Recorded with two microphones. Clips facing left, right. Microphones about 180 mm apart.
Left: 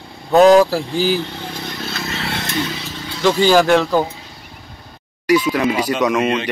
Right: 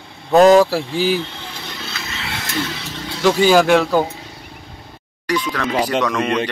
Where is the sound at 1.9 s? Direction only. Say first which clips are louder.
Left 6 dB; 45° left (ahead or behind).